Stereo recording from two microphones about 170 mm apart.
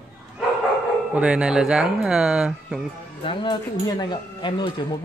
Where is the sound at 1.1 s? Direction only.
5° right (ahead or behind).